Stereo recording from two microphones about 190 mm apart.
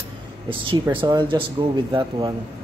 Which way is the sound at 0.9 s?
25° right (ahead or behind).